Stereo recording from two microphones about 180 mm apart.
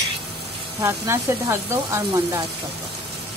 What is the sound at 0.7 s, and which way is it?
Speech, 15° right (ahead or behind).